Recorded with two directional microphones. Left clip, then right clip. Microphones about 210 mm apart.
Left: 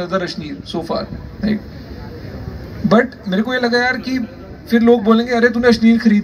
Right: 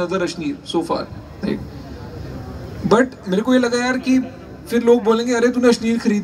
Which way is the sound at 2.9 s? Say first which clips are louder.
Left 1 dB; 60° right (ahead or behind).